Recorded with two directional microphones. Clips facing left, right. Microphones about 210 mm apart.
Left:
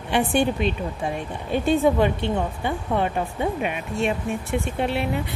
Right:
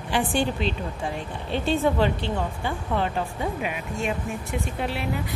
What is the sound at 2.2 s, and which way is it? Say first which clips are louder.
Speech: left 4 dB; 60° left (ahead or behind).